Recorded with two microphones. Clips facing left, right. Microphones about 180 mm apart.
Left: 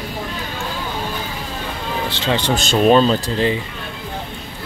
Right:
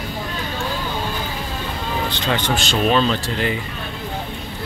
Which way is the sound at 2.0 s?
25° left (ahead or behind).